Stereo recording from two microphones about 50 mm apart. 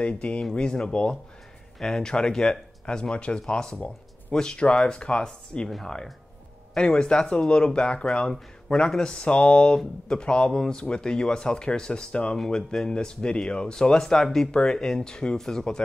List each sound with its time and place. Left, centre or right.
0.0 s speech: left
0.4 s speech: centre